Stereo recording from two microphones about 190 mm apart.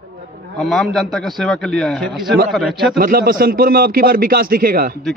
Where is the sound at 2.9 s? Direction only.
50° right (ahead or behind).